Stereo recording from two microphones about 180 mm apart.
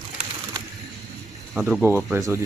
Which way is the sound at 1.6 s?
5° right (ahead or behind).